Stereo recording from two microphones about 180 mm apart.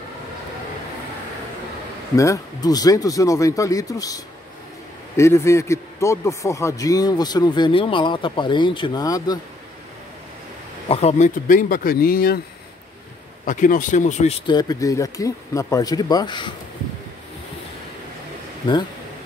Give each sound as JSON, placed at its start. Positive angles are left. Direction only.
{"t": 2.1, "sound": "a man's voice", "side_deg": 20}
{"t": 10.9, "sound": "speech", "side_deg": 35}
{"t": 13.5, "sound": "speech", "side_deg": 45}
{"t": 14.4, "sound": "a man's voice", "side_deg": 25}